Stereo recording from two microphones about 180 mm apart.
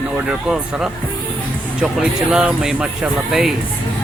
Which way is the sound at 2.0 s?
5° right (ahead or behind).